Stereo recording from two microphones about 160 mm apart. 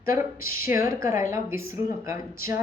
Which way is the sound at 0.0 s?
15° right (ahead or behind).